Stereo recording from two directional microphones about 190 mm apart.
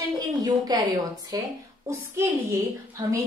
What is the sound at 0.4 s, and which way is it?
A woman's voice, 20° right (ahead or behind).